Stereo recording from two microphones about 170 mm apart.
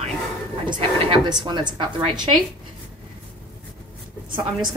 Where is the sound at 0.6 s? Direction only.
30° right (ahead or behind).